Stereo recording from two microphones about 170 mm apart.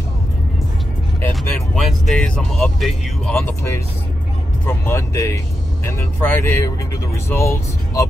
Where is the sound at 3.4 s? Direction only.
15° left (ahead or behind).